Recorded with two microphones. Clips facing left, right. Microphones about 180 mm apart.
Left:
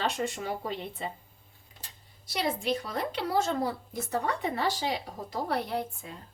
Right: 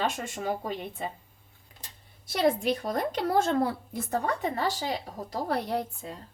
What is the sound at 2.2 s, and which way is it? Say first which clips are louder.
A woman's voice: right 5 dB; 50° right (ahead or behind).